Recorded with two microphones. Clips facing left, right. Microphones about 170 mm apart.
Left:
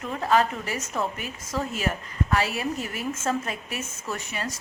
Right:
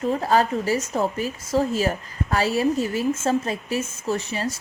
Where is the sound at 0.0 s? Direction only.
35° right (ahead or behind).